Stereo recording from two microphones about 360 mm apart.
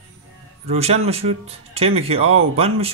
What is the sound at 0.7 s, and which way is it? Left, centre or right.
Speech, centre.